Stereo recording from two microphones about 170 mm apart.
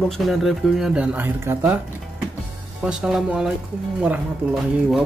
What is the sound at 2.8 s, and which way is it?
Speech, 5° right (ahead or behind).